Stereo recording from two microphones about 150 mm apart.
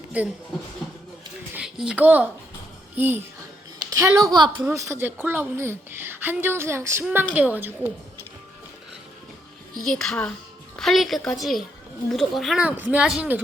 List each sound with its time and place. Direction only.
0.1 s a woman's voice: 10° right (ahead or behind)
1.5 s a child's voice: 5° right (ahead or behind)
9.8 s a woman's voice: 5° left (ahead or behind)